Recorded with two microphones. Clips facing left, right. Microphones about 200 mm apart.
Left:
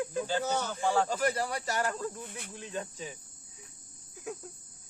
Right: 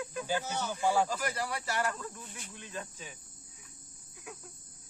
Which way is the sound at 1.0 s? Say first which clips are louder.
Left 5 dB; 30° left (ahead or behind).